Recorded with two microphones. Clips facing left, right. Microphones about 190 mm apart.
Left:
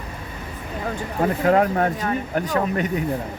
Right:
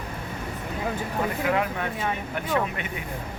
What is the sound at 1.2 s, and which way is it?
Speech, 45° left (ahead or behind).